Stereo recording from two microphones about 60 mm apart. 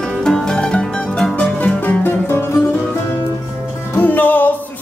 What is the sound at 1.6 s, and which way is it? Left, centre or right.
Music, left.